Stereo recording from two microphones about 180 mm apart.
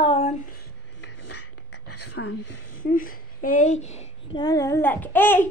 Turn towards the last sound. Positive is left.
turn(degrees=10)  # may be behind; listen again after turning